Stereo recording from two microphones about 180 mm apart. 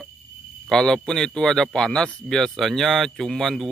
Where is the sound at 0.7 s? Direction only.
5° left (ahead or behind).